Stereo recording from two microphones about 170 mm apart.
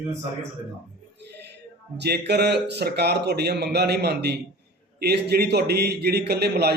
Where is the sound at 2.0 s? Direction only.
75° right (ahead or behind).